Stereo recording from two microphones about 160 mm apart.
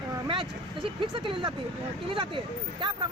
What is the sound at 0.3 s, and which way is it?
Speech, 30° right (ahead or behind).